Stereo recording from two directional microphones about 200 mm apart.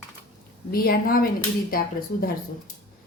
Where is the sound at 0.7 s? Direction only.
50° left (ahead or behind).